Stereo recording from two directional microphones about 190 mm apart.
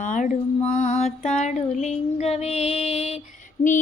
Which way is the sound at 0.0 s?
40° left (ahead or behind).